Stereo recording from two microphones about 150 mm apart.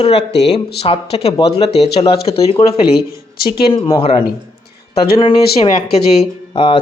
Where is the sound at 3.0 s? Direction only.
90° left.